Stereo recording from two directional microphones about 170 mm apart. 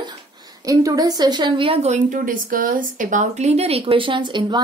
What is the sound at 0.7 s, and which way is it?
A woman's voice, 20° right (ahead or behind).